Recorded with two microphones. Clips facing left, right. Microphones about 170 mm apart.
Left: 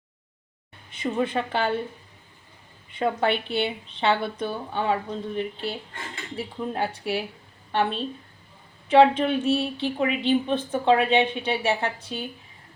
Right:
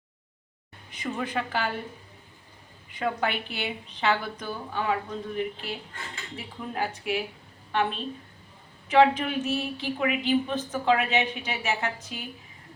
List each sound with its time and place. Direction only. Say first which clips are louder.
0.9 s a woman's voice: left 6 dB; 25° left (ahead or behind)
2.9 s a woman's voice: left 5 dB; 30° left (ahead or behind)